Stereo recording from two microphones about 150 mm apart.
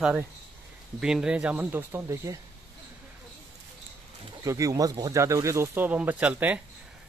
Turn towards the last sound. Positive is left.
turn(degrees=-10)  # may be behind; listen again after turning